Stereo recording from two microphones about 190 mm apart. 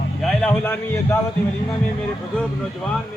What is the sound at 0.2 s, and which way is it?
Music, 5° left (ahead or behind).